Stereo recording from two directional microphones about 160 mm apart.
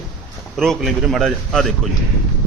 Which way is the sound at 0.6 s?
Centre (ahead or behind).